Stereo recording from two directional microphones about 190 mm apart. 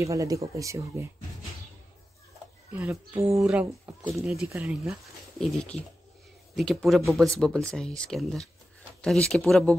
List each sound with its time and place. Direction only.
0.0 s speech: 15° right (ahead or behind)
2.7 s speech: 10° right (ahead or behind)
5.4 s speech: 5° left (ahead or behind)